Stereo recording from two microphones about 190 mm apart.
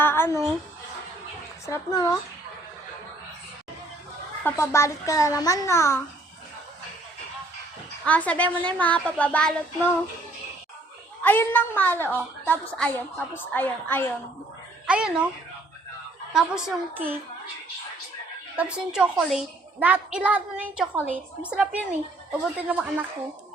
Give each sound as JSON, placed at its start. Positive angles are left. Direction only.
{"t": 0.0, "sound": "a sound", "side_deg": 10}
{"t": 1.6, "sound": "a woman's voice", "side_deg": 15}
{"t": 4.4, "sound": "a woman's voice", "side_deg": 15}
{"t": 8.0, "sound": "a woman's voice", "side_deg": 5}
{"t": 11.2, "sound": "a woman's voice", "side_deg": 10}
{"t": 14.8, "sound": "a woman's voice", "side_deg": -5}
{"t": 16.3, "sound": "a woman's voice", "side_deg": -5}
{"t": 18.5, "sound": "a woman's voice", "side_deg": -5}